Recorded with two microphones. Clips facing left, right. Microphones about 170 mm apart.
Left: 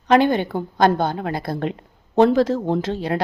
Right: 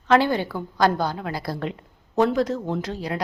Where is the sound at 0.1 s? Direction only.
20° left (ahead or behind).